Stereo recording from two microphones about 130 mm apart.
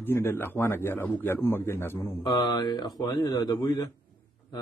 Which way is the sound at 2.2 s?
30° left (ahead or behind).